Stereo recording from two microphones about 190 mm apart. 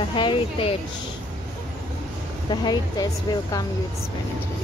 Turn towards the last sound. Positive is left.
turn(degrees=20)  # may be behind; listen again after turning